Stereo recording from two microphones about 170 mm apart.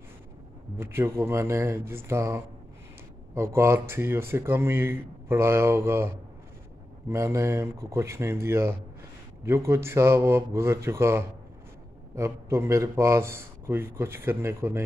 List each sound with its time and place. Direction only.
0.7 s a man's voice: 15° right (ahead or behind)
7.1 s a man's voice: 15° right (ahead or behind)